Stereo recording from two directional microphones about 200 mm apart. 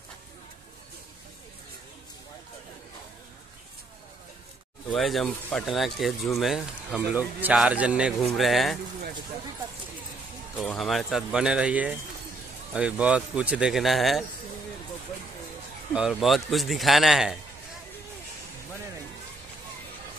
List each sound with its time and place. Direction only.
4.9 s speech: centre (ahead or behind)
10.5 s speech: centre (ahead or behind)
15.9 s speech: 5° right (ahead or behind)